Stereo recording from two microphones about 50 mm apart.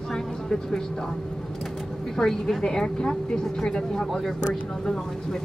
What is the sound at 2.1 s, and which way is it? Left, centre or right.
A woman's voice, centre.